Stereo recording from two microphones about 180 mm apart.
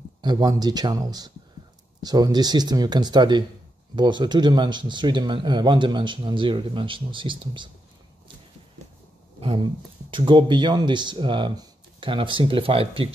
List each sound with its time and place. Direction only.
0.2 s speech: 20° right (ahead or behind)
9.4 s speech: 30° right (ahead or behind)